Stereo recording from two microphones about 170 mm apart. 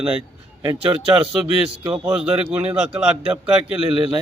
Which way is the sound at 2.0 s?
5° right (ahead or behind).